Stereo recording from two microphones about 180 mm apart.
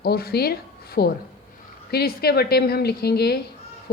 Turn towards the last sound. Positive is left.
turn(degrees=60)  # may be behind; listen again after turning